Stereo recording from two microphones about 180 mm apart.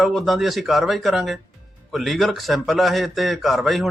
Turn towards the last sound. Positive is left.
turn(degrees=0)  # may be behind; listen again after turning